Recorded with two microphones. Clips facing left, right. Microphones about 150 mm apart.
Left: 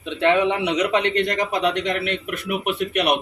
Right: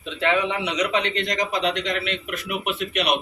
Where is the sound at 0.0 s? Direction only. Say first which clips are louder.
Left 4 dB; 60° left (ahead or behind).